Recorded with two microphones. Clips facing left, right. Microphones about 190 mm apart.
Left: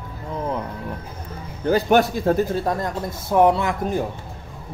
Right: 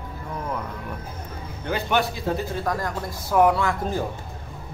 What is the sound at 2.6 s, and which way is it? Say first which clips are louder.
Speech: left 3 dB; 25° left (ahead or behind).